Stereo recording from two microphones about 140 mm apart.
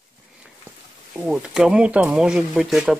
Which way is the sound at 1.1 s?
10° right (ahead or behind).